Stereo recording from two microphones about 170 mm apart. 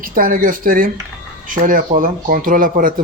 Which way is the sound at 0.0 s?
55° right (ahead or behind).